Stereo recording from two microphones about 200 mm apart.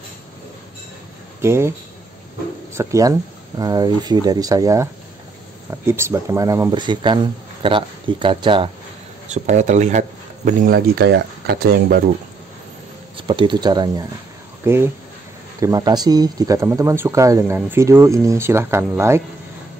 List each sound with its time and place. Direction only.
1.4 s speech: 15° right (ahead or behind)
2.7 s speech: 15° right (ahead or behind)
9.3 s speech: 35° right (ahead or behind); by 12.0 s 50° right (ahead or behind)
13.3 s speech: 25° right (ahead or behind)